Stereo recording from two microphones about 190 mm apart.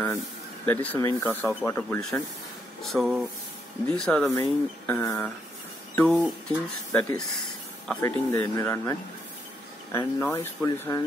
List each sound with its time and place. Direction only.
0.7 s speech: 15° left (ahead or behind)
5.9 s speech: centre (ahead or behind)
9.9 s speech: 15° left (ahead or behind)